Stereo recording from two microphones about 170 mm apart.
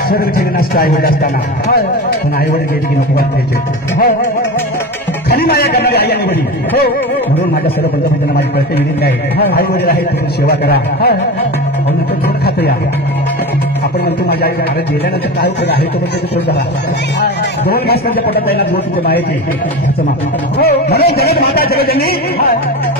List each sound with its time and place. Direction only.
0.1 s speech: 60° left (ahead or behind)
5.3 s speech: 65° left (ahead or behind)
9.0 s speech: 65° left (ahead or behind)
17.2 s speech: 65° left (ahead or behind)
20.5 s speech: 65° left (ahead or behind)